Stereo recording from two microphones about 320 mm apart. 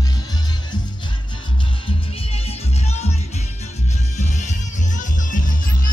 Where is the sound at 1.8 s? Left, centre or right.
Centre.